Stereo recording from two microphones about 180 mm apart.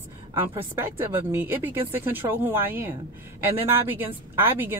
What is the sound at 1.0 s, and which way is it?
Speech, 15° right (ahead or behind).